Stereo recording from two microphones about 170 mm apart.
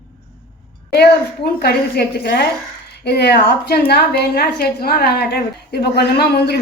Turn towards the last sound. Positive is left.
turn(degrees=70)  # may be behind; listen again after turning